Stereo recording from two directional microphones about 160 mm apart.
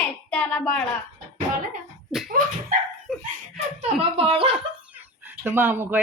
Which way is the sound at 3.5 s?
40° right (ahead or behind).